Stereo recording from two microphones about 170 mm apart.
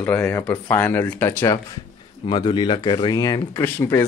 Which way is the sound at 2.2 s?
25° left (ahead or behind).